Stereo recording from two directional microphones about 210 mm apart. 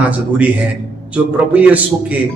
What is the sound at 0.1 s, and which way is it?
A man's voice, 5° right (ahead or behind).